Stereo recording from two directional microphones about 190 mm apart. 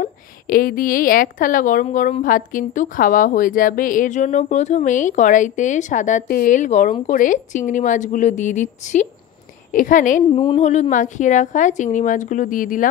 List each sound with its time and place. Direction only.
0.0 s a woman's voice: 50° left (ahead or behind)
10.3 s speech: 30° left (ahead or behind)